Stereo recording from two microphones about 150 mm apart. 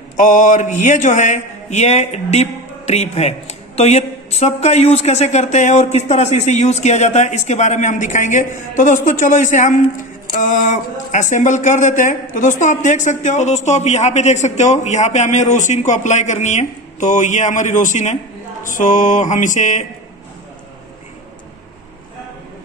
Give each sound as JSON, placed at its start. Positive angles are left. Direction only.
{"t": 0.2, "sound": "a man's voice", "side_deg": 60}